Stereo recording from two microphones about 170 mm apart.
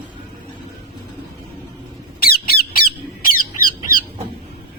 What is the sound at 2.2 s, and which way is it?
Squawk, 60° left (ahead or behind).